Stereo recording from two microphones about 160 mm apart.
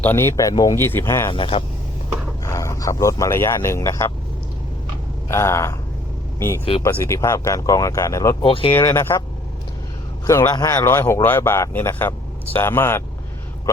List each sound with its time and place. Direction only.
0.0 s speech: 15° left (ahead or behind)
1.3 s speech: 35° left (ahead or behind)
2.4 s speech: 20° left (ahead or behind)
5.3 s speech: 15° left (ahead or behind)
7.0 s speech: 20° left (ahead or behind)
8.4 s speech: 30° left (ahead or behind)
8.7 s speech: 15° left (ahead or behind)
10.2 s speech: 20° left (ahead or behind)